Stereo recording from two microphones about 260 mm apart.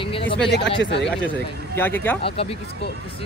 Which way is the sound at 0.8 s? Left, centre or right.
Left.